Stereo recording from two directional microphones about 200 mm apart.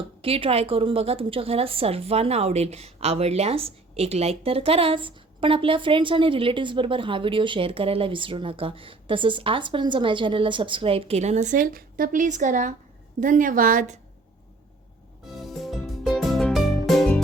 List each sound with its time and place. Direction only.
0.2 s a woman's voice: 25° right (ahead or behind)
15.4 s music: centre (ahead or behind)